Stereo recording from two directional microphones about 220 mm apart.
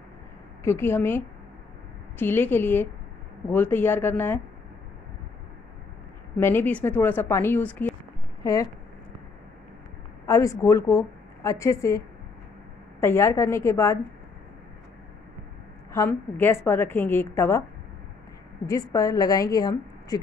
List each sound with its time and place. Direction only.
0.7 s a woman's voice: 10° left (ahead or behind)
6.3 s a woman's voice: 10° left (ahead or behind)
10.2 s a woman's voice: 15° left (ahead or behind)
13.0 s a woman's voice: 10° left (ahead or behind)
15.9 s a woman's voice: 10° left (ahead or behind)
18.7 s a woman's voice: 15° left (ahead or behind)